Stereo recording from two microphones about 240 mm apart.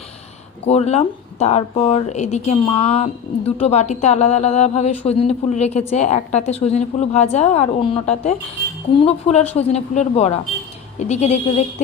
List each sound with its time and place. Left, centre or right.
0.7 s speech: left